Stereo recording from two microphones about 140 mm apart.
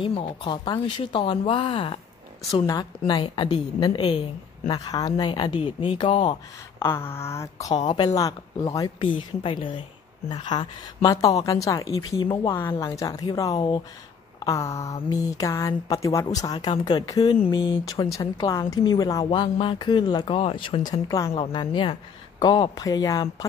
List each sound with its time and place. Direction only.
0.0 s a woman's voice: 40° left (ahead or behind)
2.6 s a woman's voice: 25° left (ahead or behind)
6.8 s speech: 15° left (ahead or behind)
9.0 s a woman's voice: 35° left (ahead or behind)
14.4 s a woman's voice: 20° left (ahead or behind)
21.4 s a woman's voice: 35° left (ahead or behind)